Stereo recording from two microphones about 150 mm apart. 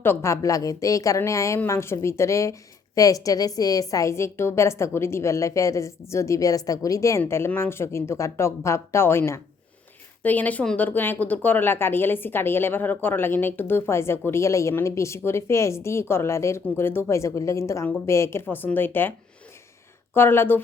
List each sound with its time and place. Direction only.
0.0 s a woman's voice: 15° left (ahead or behind)
20.1 s speech: 15° left (ahead or behind)